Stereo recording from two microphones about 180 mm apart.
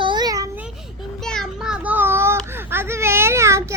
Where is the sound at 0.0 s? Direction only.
25° right (ahead or behind).